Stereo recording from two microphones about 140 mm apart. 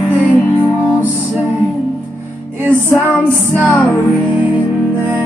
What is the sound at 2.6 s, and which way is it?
Music, 15° right (ahead or behind).